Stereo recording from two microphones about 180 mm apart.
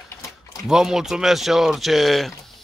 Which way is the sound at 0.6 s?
Centre (ahead or behind).